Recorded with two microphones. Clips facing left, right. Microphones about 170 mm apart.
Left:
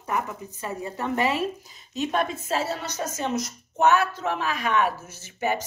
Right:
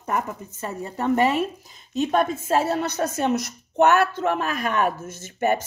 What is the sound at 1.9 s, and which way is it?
A woman's voice, 50° right (ahead or behind).